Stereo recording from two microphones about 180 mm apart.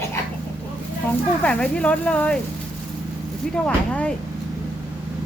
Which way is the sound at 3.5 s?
5° left (ahead or behind).